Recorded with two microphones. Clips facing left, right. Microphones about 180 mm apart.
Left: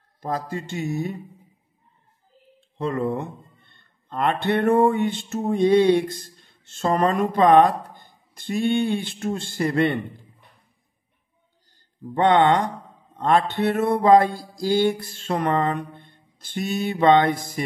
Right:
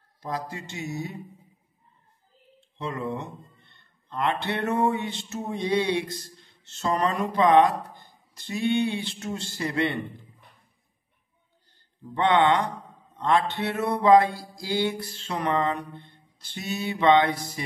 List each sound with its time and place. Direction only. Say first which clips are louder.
0.2 s speech: left 5 dB; 55° left (ahead or behind)
2.8 s speech: left 6 dB; 55° left (ahead or behind)
12.0 s speech: left 4 dB; 45° left (ahead or behind)